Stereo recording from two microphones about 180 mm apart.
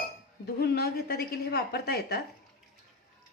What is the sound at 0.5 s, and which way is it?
Speech, 60° left (ahead or behind).